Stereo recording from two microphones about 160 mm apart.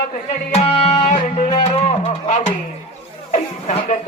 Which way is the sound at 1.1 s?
50° left (ahead or behind).